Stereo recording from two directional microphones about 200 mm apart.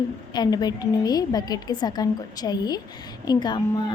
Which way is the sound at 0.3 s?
20° left (ahead or behind).